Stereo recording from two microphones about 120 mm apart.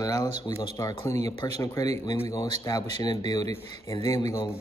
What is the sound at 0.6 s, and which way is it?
Speech, 40° left (ahead or behind).